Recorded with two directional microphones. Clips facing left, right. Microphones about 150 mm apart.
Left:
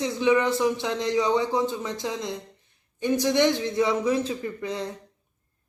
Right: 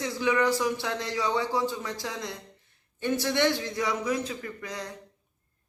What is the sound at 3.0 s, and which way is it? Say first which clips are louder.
Speech: left 4 dB; 15° left (ahead or behind).